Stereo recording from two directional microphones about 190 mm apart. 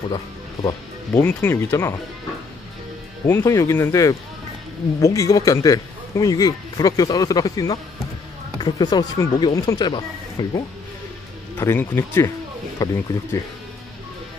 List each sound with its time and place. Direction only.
1.2 s speech: 10° left (ahead or behind)
3.3 s a man's voice: 15° left (ahead or behind)
11.5 s a man's voice: 10° left (ahead or behind)